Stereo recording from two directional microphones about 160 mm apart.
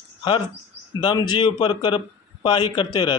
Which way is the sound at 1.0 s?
30° left (ahead or behind).